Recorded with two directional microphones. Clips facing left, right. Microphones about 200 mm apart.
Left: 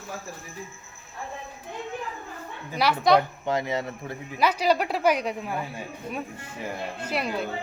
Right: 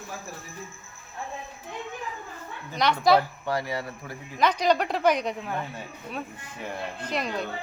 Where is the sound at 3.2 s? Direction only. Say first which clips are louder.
Left 2 dB; 20° left (ahead or behind).